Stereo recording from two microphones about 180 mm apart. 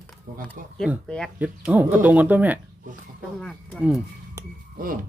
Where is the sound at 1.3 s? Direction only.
10° right (ahead or behind).